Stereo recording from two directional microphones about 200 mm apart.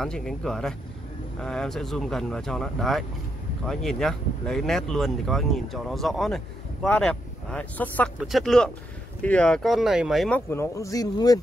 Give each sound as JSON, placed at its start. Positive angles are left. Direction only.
{"t": 0.0, "sound": "speech", "side_deg": 0}
{"t": 10.5, "sound": "speech", "side_deg": 15}